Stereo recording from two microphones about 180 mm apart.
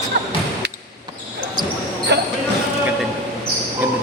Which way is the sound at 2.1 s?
70° right (ahead or behind).